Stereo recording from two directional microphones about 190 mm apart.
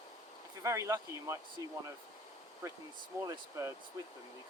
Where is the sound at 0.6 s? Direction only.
15° right (ahead or behind).